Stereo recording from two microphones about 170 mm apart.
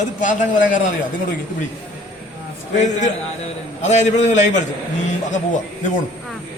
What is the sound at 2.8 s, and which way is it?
A man's voice, 45° left (ahead or behind).